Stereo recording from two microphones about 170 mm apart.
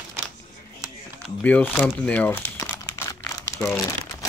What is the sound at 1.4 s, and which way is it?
Speech, 10° left (ahead or behind).